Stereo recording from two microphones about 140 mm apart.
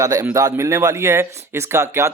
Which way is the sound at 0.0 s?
20° right (ahead or behind).